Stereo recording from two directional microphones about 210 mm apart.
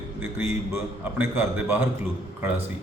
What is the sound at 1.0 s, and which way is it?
Speech, 10° right (ahead or behind).